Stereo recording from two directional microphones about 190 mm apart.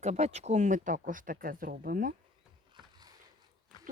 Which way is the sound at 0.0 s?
35° right (ahead or behind).